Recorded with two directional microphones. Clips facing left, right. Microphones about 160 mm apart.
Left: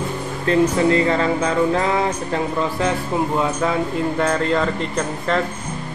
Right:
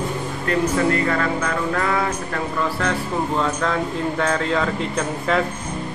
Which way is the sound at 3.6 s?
5° left (ahead or behind).